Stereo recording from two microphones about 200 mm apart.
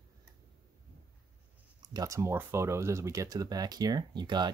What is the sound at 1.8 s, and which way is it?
Speech, 15° right (ahead or behind).